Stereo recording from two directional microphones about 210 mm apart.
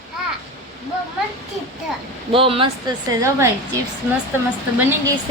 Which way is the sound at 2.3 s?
25° right (ahead or behind).